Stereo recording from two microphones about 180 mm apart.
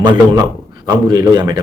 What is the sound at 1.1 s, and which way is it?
Speech, 20° right (ahead or behind).